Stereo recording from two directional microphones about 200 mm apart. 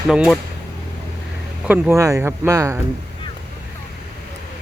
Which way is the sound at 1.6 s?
10° right (ahead or behind).